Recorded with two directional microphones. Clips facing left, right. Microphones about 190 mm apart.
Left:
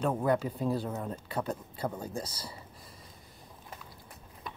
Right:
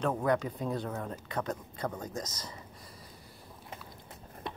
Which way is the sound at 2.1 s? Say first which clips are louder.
Left 1 dB; 30° left (ahead or behind).